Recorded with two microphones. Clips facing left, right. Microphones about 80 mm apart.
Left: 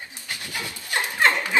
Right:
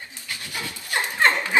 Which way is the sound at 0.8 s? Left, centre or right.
Right.